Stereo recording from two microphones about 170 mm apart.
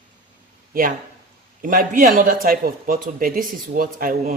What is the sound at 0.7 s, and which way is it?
Speech, 55° right (ahead or behind).